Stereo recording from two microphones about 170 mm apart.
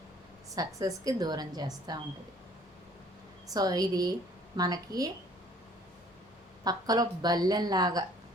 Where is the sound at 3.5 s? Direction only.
20° right (ahead or behind).